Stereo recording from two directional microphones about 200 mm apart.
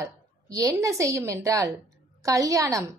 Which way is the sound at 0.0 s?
15° right (ahead or behind).